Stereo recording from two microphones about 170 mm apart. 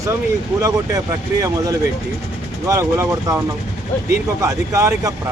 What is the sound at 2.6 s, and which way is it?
A man's voice, 15° right (ahead or behind).